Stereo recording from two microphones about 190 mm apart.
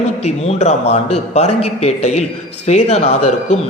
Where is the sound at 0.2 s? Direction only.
35° left (ahead or behind).